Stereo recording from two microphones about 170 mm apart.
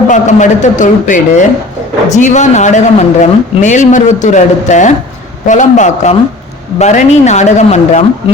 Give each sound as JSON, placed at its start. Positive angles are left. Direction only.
{"t": 0.1, "sound": "speech", "side_deg": 45}